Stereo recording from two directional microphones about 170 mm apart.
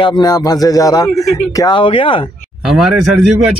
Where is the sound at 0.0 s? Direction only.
25° left (ahead or behind).